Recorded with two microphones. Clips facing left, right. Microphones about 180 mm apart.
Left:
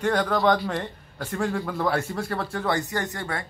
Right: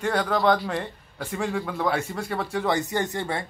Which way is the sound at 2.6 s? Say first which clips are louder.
Right 2 dB; 20° right (ahead or behind).